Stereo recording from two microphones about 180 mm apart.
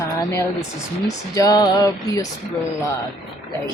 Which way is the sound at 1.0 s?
20° left (ahead or behind).